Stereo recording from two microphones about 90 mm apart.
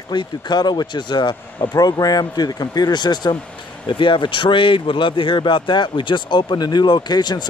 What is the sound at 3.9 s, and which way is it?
Speech, 65° left (ahead or behind).